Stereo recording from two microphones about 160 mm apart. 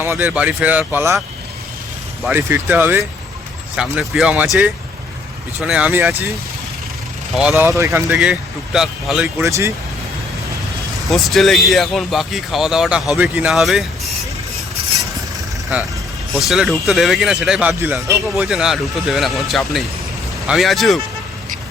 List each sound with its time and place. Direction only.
0.0 s speech: 15° right (ahead or behind)
2.3 s speech: 10° right (ahead or behind)
7.3 s speech: 5° right (ahead or behind)
7.8 s speech: 20° right (ahead or behind)
8.1 s speech: 5° right (ahead or behind)
9.4 s speech: 15° right (ahead or behind)
11.1 s speech: centre (ahead or behind)
16.4 s speech: centre (ahead or behind)
18.4 s speech: centre (ahead or behind)